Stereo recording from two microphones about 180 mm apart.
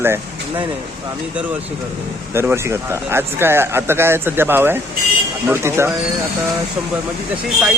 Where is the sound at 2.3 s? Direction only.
15° right (ahead or behind).